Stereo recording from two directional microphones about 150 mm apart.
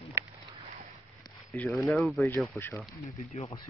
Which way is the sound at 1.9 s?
Centre (ahead or behind).